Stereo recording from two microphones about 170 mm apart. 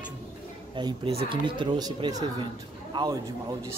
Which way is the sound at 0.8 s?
30° right (ahead or behind).